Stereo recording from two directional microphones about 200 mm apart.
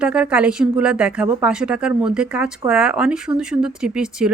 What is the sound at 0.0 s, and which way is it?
Speech, 5° right (ahead or behind).